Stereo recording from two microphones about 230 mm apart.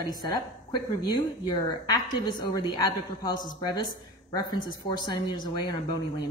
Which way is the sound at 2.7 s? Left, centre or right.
Centre.